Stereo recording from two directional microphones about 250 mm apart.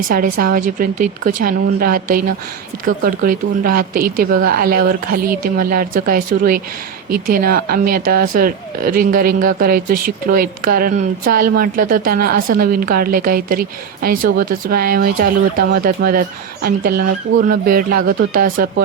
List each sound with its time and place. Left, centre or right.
0.3 s speech: right